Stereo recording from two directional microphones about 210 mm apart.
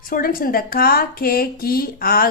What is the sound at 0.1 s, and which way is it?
Speech, 45° left (ahead or behind).